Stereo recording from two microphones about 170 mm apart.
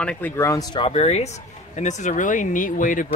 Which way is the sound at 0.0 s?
5° left (ahead or behind).